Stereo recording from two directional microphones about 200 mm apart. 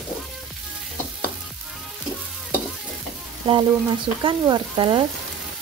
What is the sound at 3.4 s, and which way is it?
Frying, 25° right (ahead or behind).